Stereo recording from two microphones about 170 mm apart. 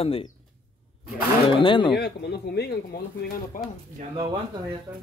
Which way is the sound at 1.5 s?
30° left (ahead or behind).